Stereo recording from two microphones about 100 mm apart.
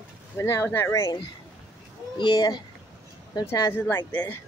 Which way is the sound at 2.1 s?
55° left (ahead or behind).